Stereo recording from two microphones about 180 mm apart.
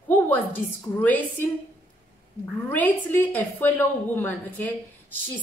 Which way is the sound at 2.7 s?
10° left (ahead or behind).